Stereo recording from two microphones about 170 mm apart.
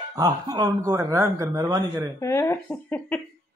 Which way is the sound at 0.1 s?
20° right (ahead or behind).